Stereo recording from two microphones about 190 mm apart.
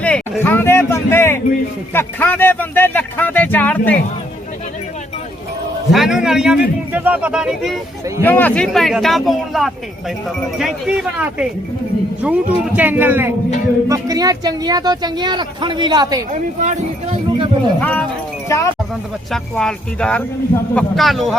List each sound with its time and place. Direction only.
0.0 s a sound: 10° left (ahead or behind)
1.9 s speech: 10° left (ahead or behind)
5.9 s a man's voice: centre (ahead or behind)
8.2 s a man's voice: 10° left (ahead or behind); by 16.2 s 20° right (ahead or behind)
16.3 s speech: 40° right (ahead or behind)
17.7 s speech: 5° left (ahead or behind)
19.3 s a man's voice: 5° left (ahead or behind)